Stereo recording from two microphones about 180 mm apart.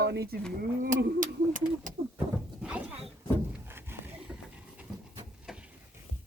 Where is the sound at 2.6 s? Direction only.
5° right (ahead or behind).